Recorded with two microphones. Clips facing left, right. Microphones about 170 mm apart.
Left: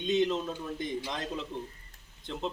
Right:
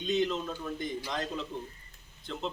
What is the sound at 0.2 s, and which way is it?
Speech, 15° left (ahead or behind).